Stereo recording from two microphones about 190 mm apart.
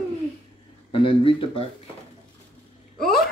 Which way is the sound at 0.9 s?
30° left (ahead or behind).